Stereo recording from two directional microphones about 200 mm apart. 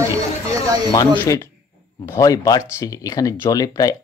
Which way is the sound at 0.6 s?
20° right (ahead or behind).